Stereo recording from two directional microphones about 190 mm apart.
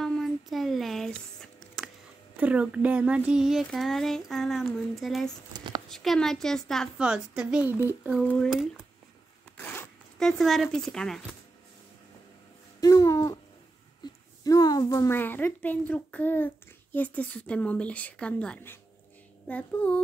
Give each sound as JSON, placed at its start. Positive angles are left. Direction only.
{"t": 0.0, "sound": "a sound", "side_deg": 0}
{"t": 2.3, "sound": "speech", "side_deg": -5}
{"t": 9.6, "sound": "zipper", "side_deg": 10}
{"t": 12.8, "sound": "a sound", "side_deg": 15}
{"t": 14.0, "sound": "a child's voice", "side_deg": 20}
{"t": 19.4, "sound": "child singing", "side_deg": 5}